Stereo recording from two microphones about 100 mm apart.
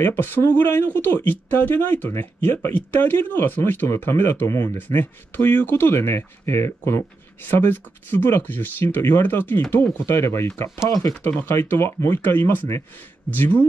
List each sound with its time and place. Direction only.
0.0 s speech: 20° left (ahead or behind)
11.2 s speech: 20° left (ahead or behind)